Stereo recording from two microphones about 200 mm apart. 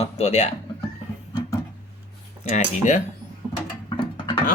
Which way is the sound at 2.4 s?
35° left (ahead or behind).